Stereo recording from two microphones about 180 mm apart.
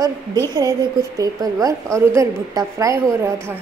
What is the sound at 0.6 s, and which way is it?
A woman's voice, 20° right (ahead or behind).